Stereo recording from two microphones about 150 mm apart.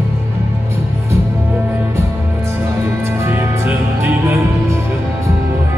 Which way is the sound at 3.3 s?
15° right (ahead or behind).